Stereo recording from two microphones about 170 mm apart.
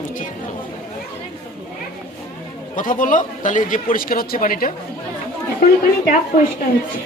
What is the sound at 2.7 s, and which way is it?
Speech, 50° left (ahead or behind).